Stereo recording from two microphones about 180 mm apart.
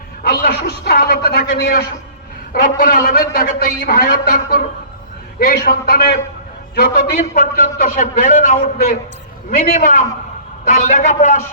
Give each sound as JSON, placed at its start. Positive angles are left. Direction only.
{"t": 0.3, "sound": "a man's voice", "side_deg": 60}
{"t": 2.5, "sound": "a man's voice", "side_deg": 50}